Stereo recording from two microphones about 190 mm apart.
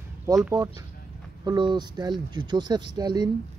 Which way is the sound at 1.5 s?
25° right (ahead or behind).